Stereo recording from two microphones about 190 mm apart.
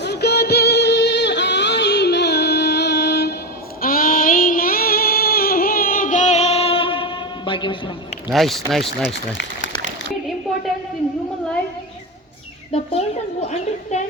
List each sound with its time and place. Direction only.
0.0 s music: 60° left (ahead or behind)
3.8 s child singing: 50° left (ahead or behind); by 7.8 s 25° left (ahead or behind)
8.3 s speech: centre (ahead or behind)
9.1 s speech: 70° left (ahead or behind)
12.7 s chicken: 30° left (ahead or behind)
13.9 s a sound: 35° left (ahead or behind)